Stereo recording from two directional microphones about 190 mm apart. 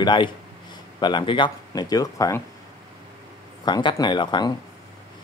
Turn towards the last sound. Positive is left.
turn(degrees=20)  # may be behind; listen again after turning